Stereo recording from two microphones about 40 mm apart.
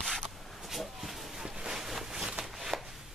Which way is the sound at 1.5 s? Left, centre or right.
Centre.